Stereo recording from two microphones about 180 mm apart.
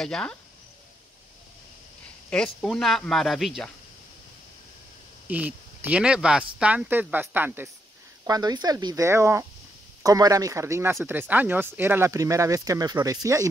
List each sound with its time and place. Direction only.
0.0 s speech: 5° left (ahead or behind)
2.2 s speech: 5° left (ahead or behind)
5.3 s speech: 10° right (ahead or behind)
8.3 s speech: 20° right (ahead or behind)